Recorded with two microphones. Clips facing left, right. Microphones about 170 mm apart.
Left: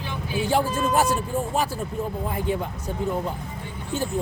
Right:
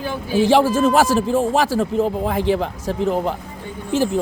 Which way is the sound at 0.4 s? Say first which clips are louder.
Right 8 dB; 90° right.